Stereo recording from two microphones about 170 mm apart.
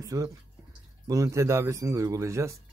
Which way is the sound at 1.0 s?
20° right (ahead or behind).